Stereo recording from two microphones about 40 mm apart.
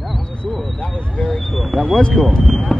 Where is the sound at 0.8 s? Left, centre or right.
Left.